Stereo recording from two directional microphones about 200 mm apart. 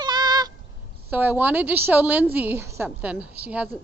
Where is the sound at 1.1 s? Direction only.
10° right (ahead or behind).